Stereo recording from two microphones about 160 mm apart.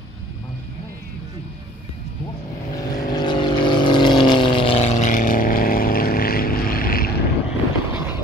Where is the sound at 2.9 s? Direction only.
25° left (ahead or behind); by 7.2 s 65° left (ahead or behind).